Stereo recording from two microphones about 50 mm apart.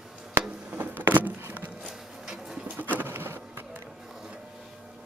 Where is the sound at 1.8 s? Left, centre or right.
Centre.